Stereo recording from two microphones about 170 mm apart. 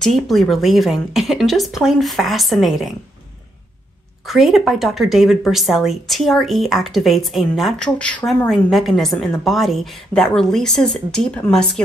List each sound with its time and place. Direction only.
0.0 s speech: centre (ahead or behind)
4.3 s speech: centre (ahead or behind)